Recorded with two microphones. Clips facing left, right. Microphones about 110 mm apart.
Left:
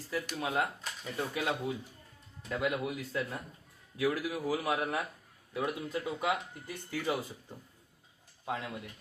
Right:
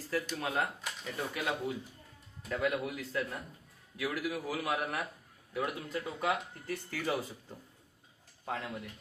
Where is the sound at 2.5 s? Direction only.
20° left (ahead or behind).